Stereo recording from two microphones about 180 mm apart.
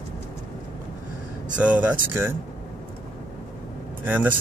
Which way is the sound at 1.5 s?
5° right (ahead or behind).